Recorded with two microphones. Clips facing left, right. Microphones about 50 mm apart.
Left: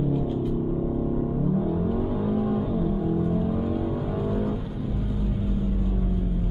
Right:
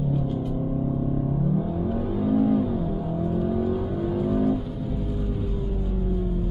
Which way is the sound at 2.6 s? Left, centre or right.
Left.